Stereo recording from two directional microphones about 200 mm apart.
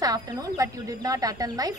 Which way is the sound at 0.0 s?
20° right (ahead or behind).